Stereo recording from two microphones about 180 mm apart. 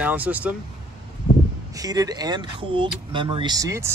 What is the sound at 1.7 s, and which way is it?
Speech, 20° right (ahead or behind).